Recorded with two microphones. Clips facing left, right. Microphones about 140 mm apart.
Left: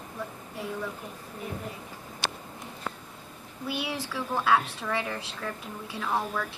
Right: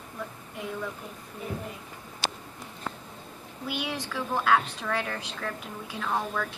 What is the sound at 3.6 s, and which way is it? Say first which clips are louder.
Speech: even; 5° left (ahead or behind).